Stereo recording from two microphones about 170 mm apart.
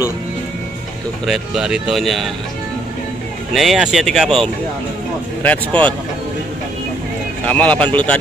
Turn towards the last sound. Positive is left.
turn(degrees=10)  # may be behind; listen again after turning